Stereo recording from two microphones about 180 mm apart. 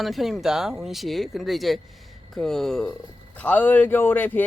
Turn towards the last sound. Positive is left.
turn(degrees=10)  # may be behind; listen again after turning